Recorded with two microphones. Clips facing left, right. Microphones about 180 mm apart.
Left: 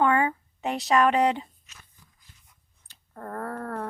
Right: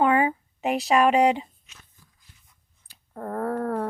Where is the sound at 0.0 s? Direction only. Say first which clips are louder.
Right 2 dB; 15° right (ahead or behind).